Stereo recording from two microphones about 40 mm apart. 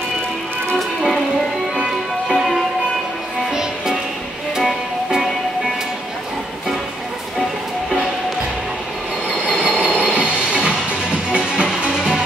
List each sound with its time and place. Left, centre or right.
0.7 s music: centre
2.2 s music: centre
3.5 s music: centre
9.6 s train: right
10.0 s a sound: right
11.3 s music: right